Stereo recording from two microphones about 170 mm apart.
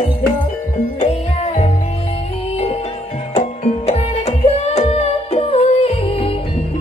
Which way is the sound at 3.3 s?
40° left (ahead or behind).